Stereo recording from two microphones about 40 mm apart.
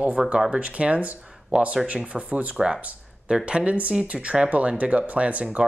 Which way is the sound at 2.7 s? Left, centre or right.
Right.